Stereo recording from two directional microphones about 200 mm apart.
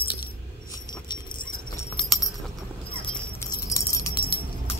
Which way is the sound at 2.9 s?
15° left (ahead or behind).